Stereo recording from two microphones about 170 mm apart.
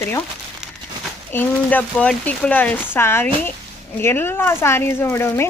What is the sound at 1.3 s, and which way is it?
Speech, 10° left (ahead or behind).